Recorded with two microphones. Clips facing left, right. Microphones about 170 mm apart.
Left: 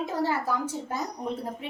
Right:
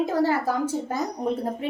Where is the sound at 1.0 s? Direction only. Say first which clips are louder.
Right 6 dB; 45° right (ahead or behind).